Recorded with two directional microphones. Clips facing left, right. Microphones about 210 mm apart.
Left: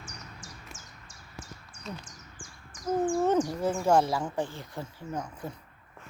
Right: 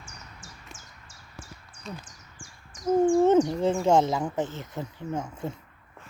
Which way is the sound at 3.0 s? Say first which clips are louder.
Right 6 dB; 25° right (ahead or behind).